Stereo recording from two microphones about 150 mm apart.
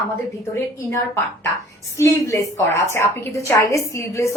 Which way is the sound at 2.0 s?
20° left (ahead or behind).